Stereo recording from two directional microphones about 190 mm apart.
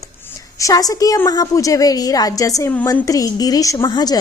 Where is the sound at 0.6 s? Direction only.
20° left (ahead or behind).